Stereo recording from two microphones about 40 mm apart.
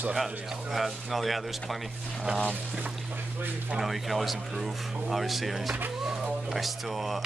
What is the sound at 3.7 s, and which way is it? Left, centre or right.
Speech, centre.